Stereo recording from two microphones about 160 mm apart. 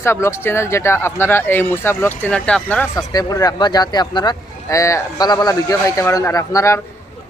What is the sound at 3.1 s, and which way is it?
Speech, 25° left (ahead or behind).